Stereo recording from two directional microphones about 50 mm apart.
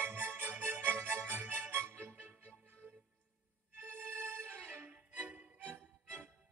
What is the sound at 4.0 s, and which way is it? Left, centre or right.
Music, right.